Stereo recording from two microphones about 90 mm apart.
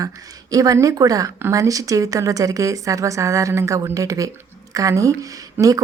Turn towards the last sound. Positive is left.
turn(degrees=-40)  # may be behind; listen again after turning